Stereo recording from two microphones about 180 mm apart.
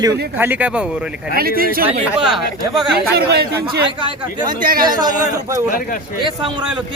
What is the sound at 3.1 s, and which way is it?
Speech, 65° right (ahead or behind).